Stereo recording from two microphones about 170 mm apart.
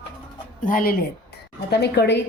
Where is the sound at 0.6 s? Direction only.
55° left (ahead or behind).